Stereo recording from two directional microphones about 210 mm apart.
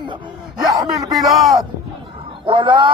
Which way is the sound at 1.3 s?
Centre (ahead or behind).